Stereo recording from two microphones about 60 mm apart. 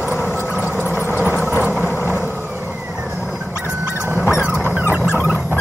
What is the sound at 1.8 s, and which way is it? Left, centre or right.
Vehicle, left.